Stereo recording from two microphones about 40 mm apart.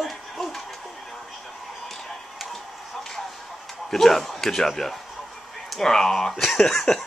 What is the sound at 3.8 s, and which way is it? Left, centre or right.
Speech, centre.